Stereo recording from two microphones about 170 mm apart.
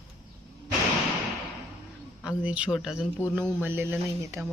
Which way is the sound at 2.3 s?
5° right (ahead or behind).